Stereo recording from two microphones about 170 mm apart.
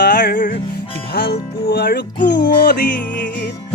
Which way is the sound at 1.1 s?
70° left (ahead or behind).